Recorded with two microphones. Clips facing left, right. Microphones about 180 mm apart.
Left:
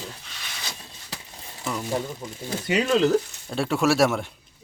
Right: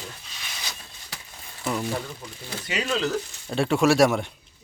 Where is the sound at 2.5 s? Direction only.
50° left (ahead or behind).